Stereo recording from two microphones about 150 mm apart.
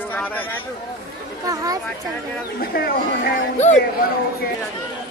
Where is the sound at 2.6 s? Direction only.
90° left.